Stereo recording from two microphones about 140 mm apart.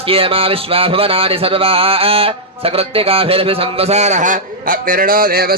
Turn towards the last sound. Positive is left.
turn(degrees=-90)